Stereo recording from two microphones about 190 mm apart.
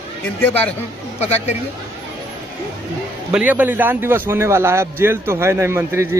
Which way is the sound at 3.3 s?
10° right (ahead or behind).